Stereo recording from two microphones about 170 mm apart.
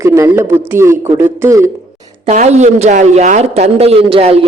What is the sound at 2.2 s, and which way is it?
A man's voice, 45° right (ahead or behind).